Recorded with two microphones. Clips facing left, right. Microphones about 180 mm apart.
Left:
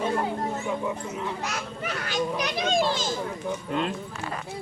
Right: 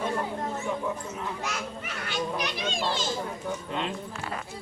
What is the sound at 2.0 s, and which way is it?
Speech, 40° left (ahead or behind).